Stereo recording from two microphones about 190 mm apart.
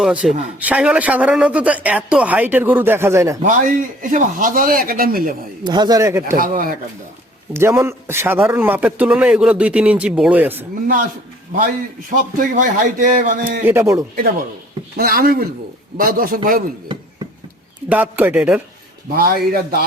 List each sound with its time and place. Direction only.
0.0 s speech: 5° right (ahead or behind)
3.4 s a man's voice: 45° right (ahead or behind)
5.6 s speech: 20° right (ahead or behind)
6.3 s a man's voice: 50° right (ahead or behind)
7.5 s speech: 15° right (ahead or behind)
12.4 s a man's voice: 45° right (ahead or behind)
13.7 s speech: 15° right (ahead or behind)
14.9 s a man's voice: 50° right (ahead or behind)
17.8 s speech: 10° right (ahead or behind)
19.1 s a man's voice: 50° right (ahead or behind)